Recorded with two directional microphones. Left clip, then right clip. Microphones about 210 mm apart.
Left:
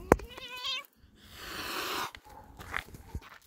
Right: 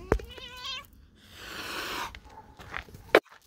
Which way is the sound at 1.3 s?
10° left (ahead or behind).